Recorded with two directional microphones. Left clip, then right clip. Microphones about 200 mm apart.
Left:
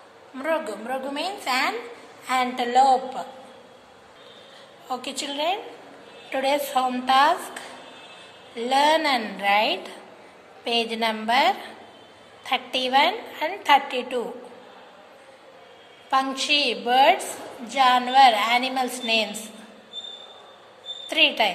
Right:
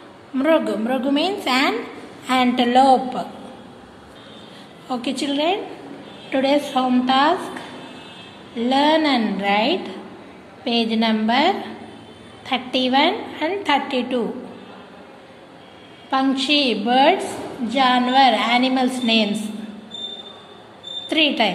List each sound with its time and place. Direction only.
0.4 s a woman's voice: 5° left (ahead or behind)
4.8 s a woman's voice: 15° left (ahead or behind)
8.5 s a woman's voice: 20° left (ahead or behind)
16.1 s a woman's voice: 20° left (ahead or behind)
21.1 s a woman's voice: 15° left (ahead or behind)